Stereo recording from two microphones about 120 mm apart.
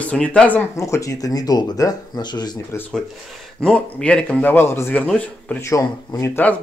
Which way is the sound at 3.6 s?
5° left (ahead or behind).